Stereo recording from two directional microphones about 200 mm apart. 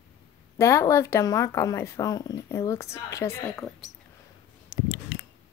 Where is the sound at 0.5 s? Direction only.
15° left (ahead or behind).